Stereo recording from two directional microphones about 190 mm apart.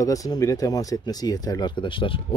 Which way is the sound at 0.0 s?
20° left (ahead or behind).